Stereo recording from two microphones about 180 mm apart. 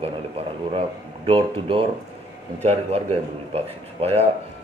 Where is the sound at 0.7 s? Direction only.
30° right (ahead or behind).